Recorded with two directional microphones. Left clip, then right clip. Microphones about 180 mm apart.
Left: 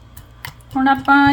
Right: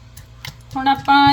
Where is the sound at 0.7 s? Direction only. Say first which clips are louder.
Left 1 dB; 30° left (ahead or behind).